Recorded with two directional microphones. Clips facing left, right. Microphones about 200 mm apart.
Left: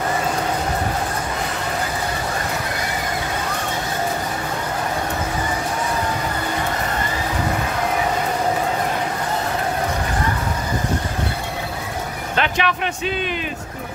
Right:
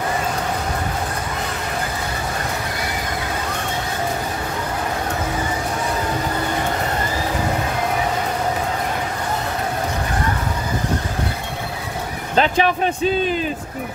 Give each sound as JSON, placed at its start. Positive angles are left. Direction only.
{"t": 12.4, "sound": "a man's voice", "side_deg": -35}